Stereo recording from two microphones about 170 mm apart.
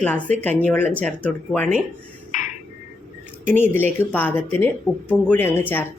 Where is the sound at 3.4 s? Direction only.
10° left (ahead or behind).